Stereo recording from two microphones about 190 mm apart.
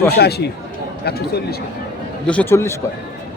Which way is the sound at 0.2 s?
60° left (ahead or behind).